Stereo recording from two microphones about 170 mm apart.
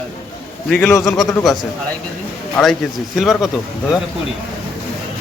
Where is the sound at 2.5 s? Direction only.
Centre (ahead or behind).